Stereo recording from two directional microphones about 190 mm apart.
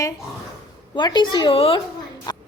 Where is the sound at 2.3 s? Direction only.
20° left (ahead or behind).